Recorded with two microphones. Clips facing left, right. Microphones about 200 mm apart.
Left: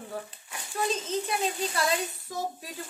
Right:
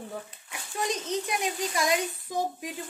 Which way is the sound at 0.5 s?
15° right (ahead or behind).